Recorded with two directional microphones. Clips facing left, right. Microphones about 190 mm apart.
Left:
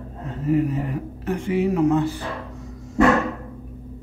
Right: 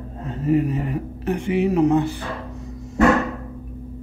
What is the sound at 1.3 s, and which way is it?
Speech, 20° right (ahead or behind).